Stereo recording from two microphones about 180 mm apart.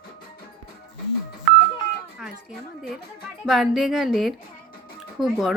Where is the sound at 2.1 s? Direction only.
5° right (ahead or behind).